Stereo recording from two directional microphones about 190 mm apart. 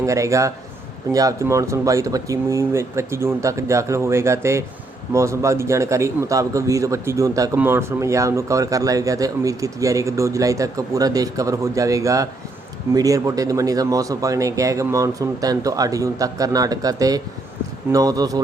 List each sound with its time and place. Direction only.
0.0 s a man's voice: 15° right (ahead or behind)